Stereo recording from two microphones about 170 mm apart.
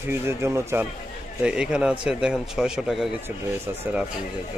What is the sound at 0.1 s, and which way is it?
A man's voice, 15° right (ahead or behind).